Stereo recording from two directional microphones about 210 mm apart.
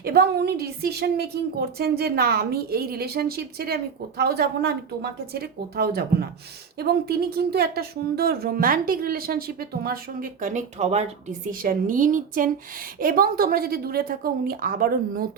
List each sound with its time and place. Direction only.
0.0 s speech: 45° right (ahead or behind)